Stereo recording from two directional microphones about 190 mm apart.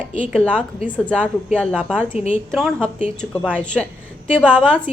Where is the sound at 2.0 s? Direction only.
35° left (ahead or behind).